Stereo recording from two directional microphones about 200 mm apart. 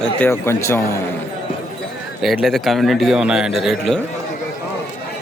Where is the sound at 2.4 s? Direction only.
Centre (ahead or behind).